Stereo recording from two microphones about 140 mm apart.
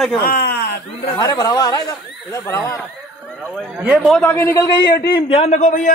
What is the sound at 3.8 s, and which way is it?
Speech, 10° right (ahead or behind).